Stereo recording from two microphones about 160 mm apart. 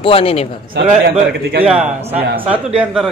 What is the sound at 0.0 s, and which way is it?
Speech, 35° left (ahead or behind).